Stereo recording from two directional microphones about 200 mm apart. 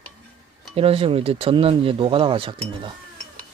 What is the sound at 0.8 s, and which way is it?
Speech, 30° right (ahead or behind).